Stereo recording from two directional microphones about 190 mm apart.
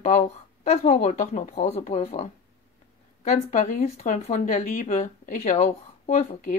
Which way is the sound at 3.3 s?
40° left (ahead or behind).